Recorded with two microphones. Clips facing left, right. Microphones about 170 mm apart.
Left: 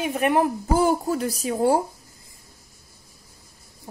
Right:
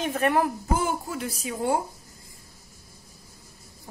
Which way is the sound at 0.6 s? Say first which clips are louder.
Left 6 dB; 35° left (ahead or behind).